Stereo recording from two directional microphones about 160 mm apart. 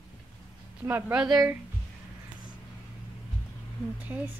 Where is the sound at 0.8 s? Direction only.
10° right (ahead or behind).